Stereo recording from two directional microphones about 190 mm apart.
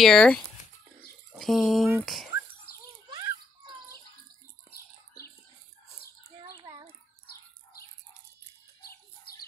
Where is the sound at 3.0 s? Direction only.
20° right (ahead or behind).